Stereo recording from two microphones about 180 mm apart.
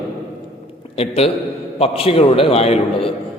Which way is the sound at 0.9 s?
35° left (ahead or behind).